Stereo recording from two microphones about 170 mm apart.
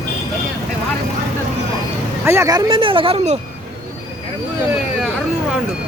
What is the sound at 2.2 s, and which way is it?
Speech, 15° right (ahead or behind).